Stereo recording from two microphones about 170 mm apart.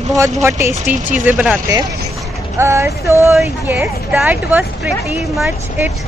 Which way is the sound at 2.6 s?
15° right (ahead or behind).